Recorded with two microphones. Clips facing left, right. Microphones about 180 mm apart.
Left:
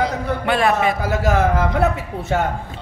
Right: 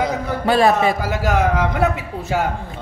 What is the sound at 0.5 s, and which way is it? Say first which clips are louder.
Speech: right 3 dB; 35° right (ahead or behind).